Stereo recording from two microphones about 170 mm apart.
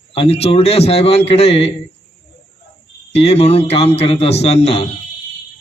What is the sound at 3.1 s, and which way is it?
A man's voice, 35° left (ahead or behind).